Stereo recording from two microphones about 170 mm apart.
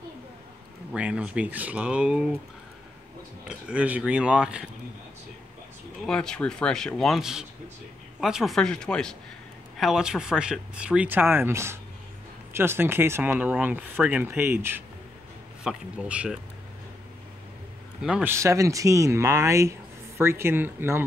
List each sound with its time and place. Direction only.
0.9 s speech: 5° right (ahead or behind)
3.4 s speech: 5° right (ahead or behind)
6.0 s speech: 5° left (ahead or behind)
18.0 s speech: 5° right (ahead or behind)
18.3 s speech: 15° right (ahead or behind)